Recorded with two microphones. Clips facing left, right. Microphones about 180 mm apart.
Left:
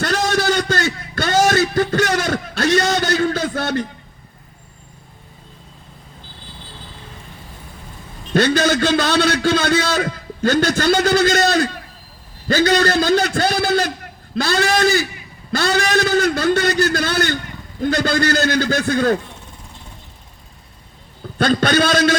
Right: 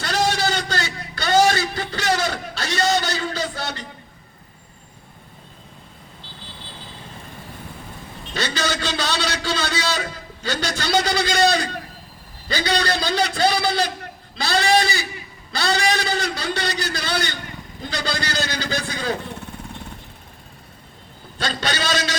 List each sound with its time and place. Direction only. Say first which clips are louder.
0.0 s a sound: left 3 dB; 50° left (ahead or behind)
8.3 s a man's voice: left 10 dB; 50° left (ahead or behind)
21.3 s a man's voice: left 10 dB; 55° left (ahead or behind)